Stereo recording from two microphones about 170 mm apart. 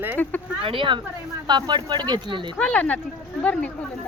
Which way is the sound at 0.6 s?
30° right (ahead or behind).